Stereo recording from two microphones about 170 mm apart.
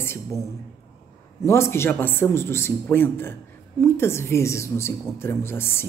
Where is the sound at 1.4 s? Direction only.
15° left (ahead or behind).